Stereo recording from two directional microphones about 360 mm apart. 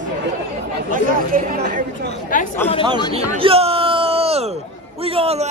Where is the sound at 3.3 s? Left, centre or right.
Centre.